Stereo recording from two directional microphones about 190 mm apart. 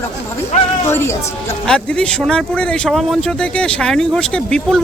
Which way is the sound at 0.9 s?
15° left (ahead or behind).